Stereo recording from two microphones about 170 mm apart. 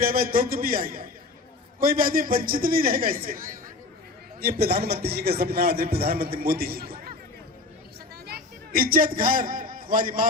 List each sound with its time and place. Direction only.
0.0 s a man's voice: 60° right (ahead or behind)
8.3 s a man's voice: 60° right (ahead or behind)